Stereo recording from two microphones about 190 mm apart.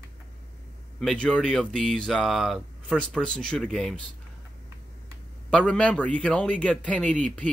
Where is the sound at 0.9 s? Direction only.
5° left (ahead or behind).